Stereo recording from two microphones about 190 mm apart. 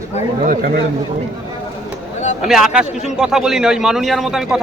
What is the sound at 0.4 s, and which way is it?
Speech, 45° right (ahead or behind).